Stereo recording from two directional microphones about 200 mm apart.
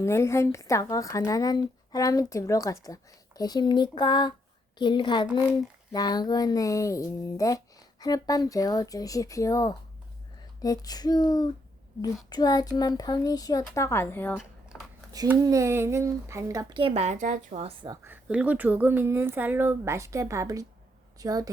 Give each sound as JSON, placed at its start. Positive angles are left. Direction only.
{"t": 0.0, "sound": "a child's voice", "side_deg": 15}
{"t": 14.3, "sound": "a sound", "side_deg": 0}
{"t": 15.1, "sound": "speech", "side_deg": -20}
{"t": 18.0, "sound": "speech", "side_deg": -10}